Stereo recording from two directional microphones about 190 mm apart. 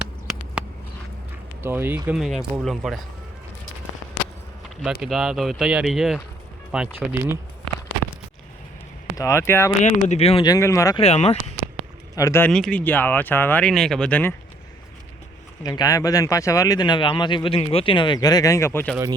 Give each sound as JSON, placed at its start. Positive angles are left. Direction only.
{"t": 0.0, "sound": "a sound", "side_deg": -5}
{"t": 1.6, "sound": "speech", "side_deg": -10}
{"t": 4.8, "sound": "speech", "side_deg": -5}
{"t": 9.1, "sound": "speech", "side_deg": 15}
{"t": 9.8, "sound": "speech", "side_deg": 35}
{"t": 11.0, "sound": "speech", "side_deg": 35}
{"t": 12.1, "sound": "speech", "side_deg": 15}
{"t": 12.5, "sound": "speech", "side_deg": 0}
{"t": 15.6, "sound": "speech", "side_deg": 20}